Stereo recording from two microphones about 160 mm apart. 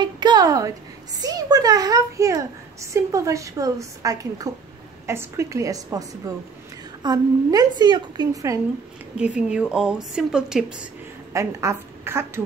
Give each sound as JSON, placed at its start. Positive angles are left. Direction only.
{"t": 0.0, "sound": "a woman's voice", "side_deg": -25}
{"t": 9.1, "sound": "speech", "side_deg": -5}
{"t": 11.3, "sound": "a woman's voice", "side_deg": -15}